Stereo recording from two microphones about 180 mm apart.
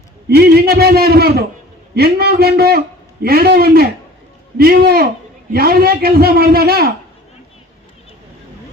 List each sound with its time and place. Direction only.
0.3 s a man's voice: 60° right (ahead or behind)